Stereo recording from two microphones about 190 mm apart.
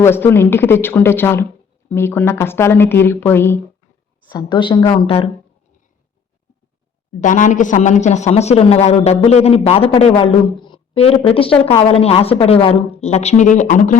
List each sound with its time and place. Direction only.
0.0 s speech: 10° left (ahead or behind)
4.3 s a woman's voice: 20° left (ahead or behind)
7.2 s speech: 40° left (ahead or behind)